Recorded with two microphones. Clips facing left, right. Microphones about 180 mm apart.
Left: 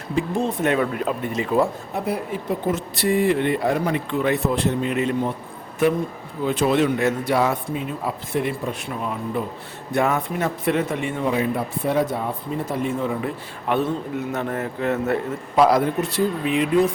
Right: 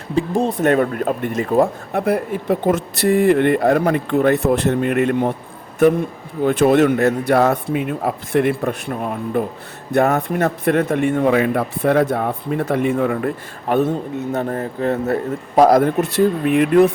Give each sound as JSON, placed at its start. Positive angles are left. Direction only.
{"t": 0.2, "sound": "speech", "side_deg": -35}
{"t": 6.4, "sound": "speech", "side_deg": -60}
{"t": 10.2, "sound": "speech", "side_deg": -55}
{"t": 13.7, "sound": "speech", "side_deg": -45}
{"t": 14.3, "sound": "a man's voice", "side_deg": -35}
{"t": 16.1, "sound": "speech", "side_deg": -55}